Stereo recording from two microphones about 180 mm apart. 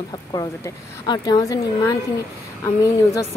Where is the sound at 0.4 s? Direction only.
20° left (ahead or behind).